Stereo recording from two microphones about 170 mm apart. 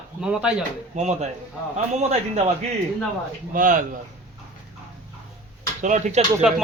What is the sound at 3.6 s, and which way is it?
Speech, 50° right (ahead or behind).